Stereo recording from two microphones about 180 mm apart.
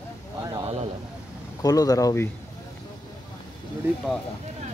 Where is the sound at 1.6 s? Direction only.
20° left (ahead or behind).